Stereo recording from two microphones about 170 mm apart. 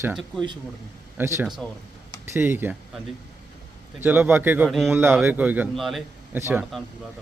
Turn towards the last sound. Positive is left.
turn(degrees=0)  # may be behind; listen again after turning